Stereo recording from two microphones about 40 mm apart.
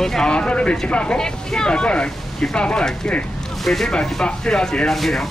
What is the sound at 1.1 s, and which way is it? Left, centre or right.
Speech, centre.